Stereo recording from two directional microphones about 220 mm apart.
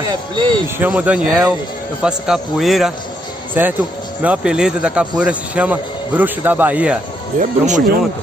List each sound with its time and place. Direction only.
0.1 s speech: 20° right (ahead or behind)
0.7 s a man's voice: 5° right (ahead or behind)
7.3 s speech: 35° right (ahead or behind)